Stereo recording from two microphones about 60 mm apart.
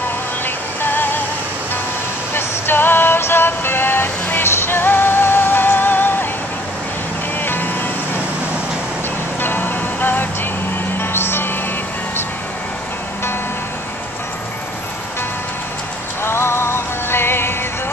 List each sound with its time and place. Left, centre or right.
2.3 s music: left
7.4 s music: left
9.4 s music: left
16.2 s music: left